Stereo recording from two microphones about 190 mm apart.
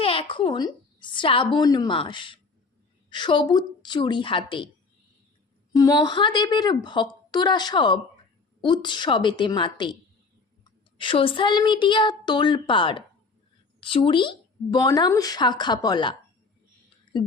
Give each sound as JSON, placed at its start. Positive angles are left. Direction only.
{"t": 0.0, "sound": "a woman's voice", "side_deg": 30}
{"t": 5.7, "sound": "speech", "side_deg": 20}